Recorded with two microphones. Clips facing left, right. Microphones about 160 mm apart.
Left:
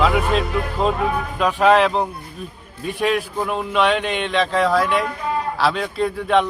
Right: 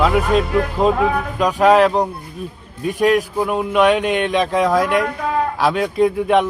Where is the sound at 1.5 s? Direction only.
10° right (ahead or behind).